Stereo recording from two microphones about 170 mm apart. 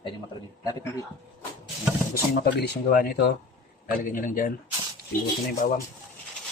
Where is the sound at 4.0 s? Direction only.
55° left (ahead or behind).